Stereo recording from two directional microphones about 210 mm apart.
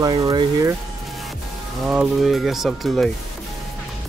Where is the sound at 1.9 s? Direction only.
5° right (ahead or behind).